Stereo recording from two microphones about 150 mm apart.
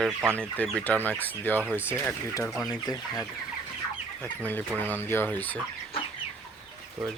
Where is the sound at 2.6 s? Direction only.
25° left (ahead or behind).